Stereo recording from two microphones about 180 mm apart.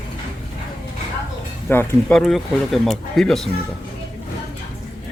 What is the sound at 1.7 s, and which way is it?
Speech, 10° left (ahead or behind).